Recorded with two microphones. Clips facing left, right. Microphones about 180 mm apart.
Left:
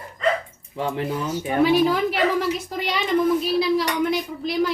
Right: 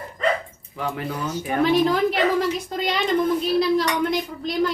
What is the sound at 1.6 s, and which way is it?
Speech, 5° left (ahead or behind).